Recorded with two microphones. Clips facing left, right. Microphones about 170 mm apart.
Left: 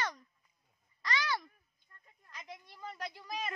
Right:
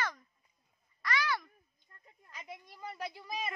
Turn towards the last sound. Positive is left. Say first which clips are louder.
# right 1 dB
turn(degrees=-5)  # may be behind; listen again after turning